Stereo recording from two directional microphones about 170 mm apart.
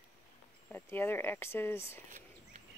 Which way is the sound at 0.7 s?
10° left (ahead or behind).